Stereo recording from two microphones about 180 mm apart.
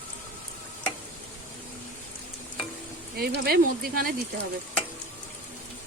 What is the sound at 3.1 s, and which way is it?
Speech, 60° right (ahead or behind).